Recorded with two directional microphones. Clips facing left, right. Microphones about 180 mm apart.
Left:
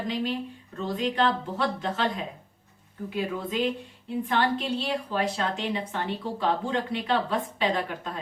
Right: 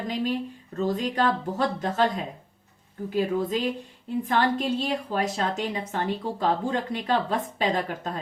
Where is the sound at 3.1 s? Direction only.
40° right (ahead or behind).